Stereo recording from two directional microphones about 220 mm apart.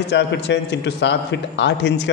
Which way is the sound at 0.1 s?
50° left (ahead or behind).